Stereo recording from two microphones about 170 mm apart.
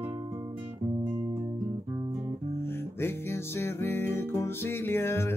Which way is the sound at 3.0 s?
15° left (ahead or behind).